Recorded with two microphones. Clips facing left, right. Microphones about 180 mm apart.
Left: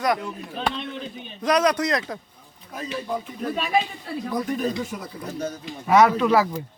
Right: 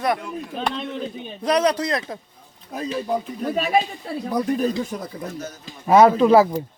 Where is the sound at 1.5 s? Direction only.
30° right (ahead or behind).